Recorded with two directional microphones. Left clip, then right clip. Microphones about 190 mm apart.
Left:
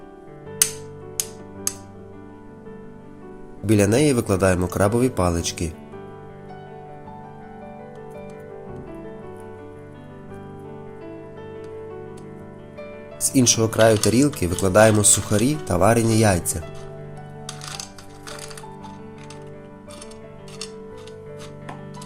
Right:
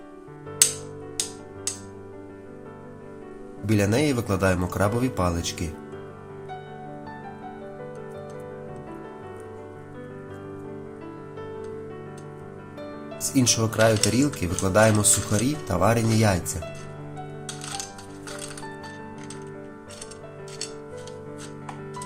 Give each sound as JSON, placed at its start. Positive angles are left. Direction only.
{"t": 3.7, "sound": "speech", "side_deg": 30}
{"t": 13.2, "sound": "speech", "side_deg": 30}